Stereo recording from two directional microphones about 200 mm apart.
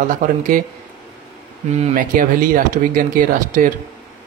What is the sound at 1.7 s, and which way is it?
Speech, 40° right (ahead or behind).